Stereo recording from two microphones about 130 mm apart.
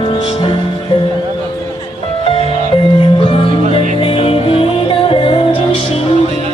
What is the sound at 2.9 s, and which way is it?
Music, 45° left (ahead or behind).